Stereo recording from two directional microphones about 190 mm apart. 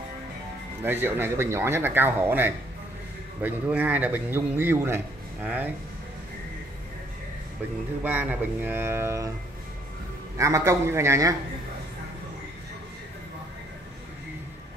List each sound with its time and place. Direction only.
0.8 s speech: 10° right (ahead or behind)
8.0 s speech: 10° right (ahead or behind)
10.3 s speech: 15° right (ahead or behind)